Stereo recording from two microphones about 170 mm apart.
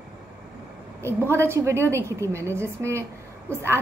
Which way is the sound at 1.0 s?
15° right (ahead or behind).